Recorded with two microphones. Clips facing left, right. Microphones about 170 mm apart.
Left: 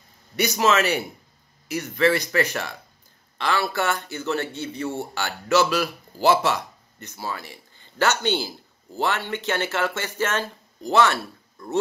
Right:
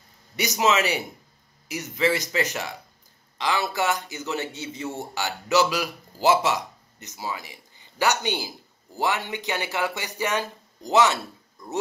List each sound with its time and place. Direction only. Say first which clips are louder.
0.4 s a man's voice: left 2 dB; 15° right (ahead or behind)